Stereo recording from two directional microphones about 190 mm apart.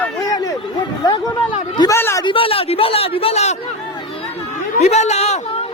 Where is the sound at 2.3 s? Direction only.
30° left (ahead or behind).